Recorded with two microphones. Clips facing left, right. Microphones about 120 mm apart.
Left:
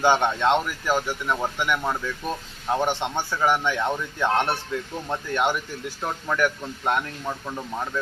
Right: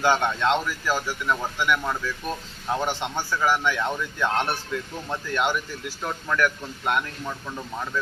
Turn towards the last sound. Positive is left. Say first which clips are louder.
# left 1 dB
turn(degrees=20)  # may be behind; listen again after turning